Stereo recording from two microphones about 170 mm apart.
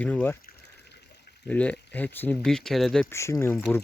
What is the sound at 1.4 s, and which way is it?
Speech, 10° left (ahead or behind).